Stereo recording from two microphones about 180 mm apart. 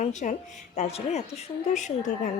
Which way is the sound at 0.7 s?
35° left (ahead or behind).